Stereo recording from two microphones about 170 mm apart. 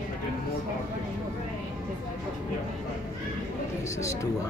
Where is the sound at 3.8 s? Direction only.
15° left (ahead or behind).